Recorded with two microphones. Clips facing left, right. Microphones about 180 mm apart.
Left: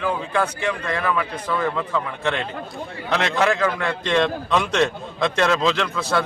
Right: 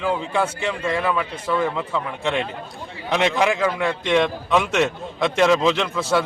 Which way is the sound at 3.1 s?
15° right (ahead or behind).